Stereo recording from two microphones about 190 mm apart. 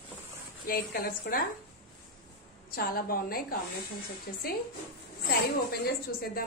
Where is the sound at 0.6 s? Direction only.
50° left (ahead or behind).